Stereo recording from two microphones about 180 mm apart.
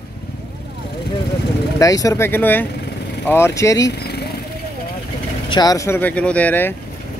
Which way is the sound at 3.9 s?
65° left (ahead or behind).